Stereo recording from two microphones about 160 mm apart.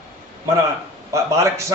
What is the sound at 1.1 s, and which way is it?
Speech, 20° right (ahead or behind).